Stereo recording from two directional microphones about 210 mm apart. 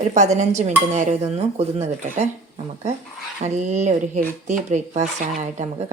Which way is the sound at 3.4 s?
35° right (ahead or behind).